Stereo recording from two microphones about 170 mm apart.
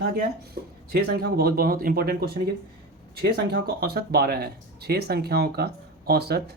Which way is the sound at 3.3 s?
70° right (ahead or behind).